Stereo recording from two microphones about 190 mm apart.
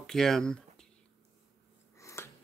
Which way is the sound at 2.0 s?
15° left (ahead or behind).